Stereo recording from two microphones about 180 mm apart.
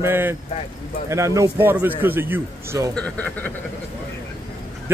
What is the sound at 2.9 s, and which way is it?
Speech, 5° left (ahead or behind).